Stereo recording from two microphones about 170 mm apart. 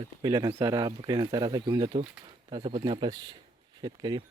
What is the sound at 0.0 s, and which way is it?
Speech, 25° right (ahead or behind).